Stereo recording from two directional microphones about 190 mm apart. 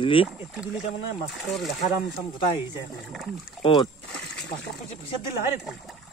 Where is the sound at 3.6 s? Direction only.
30° left (ahead or behind).